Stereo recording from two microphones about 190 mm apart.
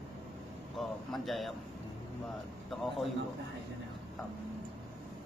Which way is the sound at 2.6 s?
Centre (ahead or behind).